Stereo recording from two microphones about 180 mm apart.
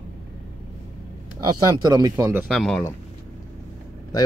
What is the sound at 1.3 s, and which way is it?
Speech, 20° right (ahead or behind).